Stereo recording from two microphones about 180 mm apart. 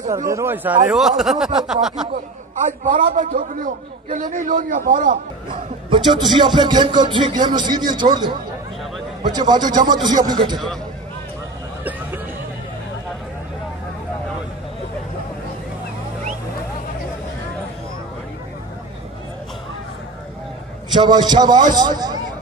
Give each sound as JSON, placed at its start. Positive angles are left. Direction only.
{"t": 0.3, "sound": "speech", "side_deg": -15}
{"t": 0.9, "sound": "speech", "side_deg": 0}
{"t": 2.1, "sound": "a man's voice", "side_deg": -45}
{"t": 5.9, "sound": "speech", "side_deg": -25}
{"t": 20.9, "sound": "speech", "side_deg": -25}